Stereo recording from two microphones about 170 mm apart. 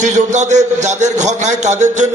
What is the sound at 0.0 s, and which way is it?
A man's voice, 45° right (ahead or behind).